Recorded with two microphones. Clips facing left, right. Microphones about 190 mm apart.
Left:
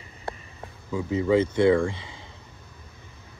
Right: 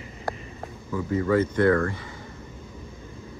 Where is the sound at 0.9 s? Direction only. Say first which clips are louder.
Left 1 dB; 10° left (ahead or behind).